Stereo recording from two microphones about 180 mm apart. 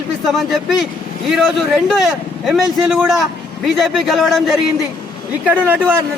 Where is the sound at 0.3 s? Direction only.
Centre (ahead or behind).